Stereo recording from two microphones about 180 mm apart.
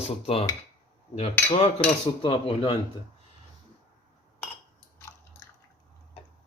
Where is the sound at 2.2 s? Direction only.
30° left (ahead or behind).